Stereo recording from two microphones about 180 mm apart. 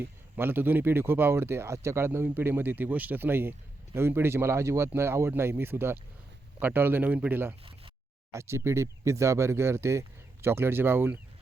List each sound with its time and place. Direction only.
0.0 s speech: 10° right (ahead or behind)